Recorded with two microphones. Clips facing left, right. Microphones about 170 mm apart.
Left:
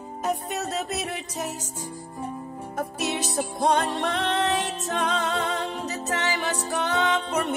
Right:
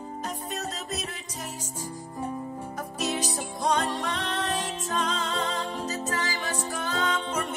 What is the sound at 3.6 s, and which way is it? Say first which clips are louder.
Music: left 3 dB; 60° left (ahead or behind).